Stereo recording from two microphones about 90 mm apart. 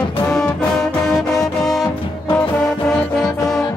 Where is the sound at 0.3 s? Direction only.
10° left (ahead or behind).